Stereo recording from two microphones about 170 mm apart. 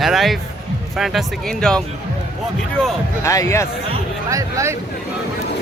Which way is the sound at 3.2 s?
20° left (ahead or behind).